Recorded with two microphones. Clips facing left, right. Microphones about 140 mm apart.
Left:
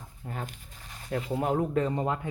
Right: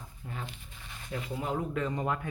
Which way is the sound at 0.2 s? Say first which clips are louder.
Left 4 dB; 45° left (ahead or behind).